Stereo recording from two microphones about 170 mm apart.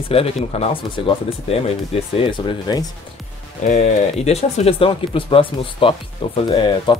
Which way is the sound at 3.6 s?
45° left (ahead or behind).